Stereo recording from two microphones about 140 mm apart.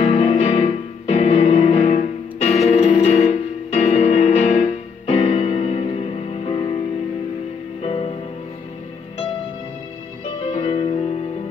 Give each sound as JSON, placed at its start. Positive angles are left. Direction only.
{"t": 0.0, "sound": "music", "side_deg": 45}
{"t": 7.8, "sound": "music", "side_deg": 50}
{"t": 10.4, "sound": "music", "side_deg": 40}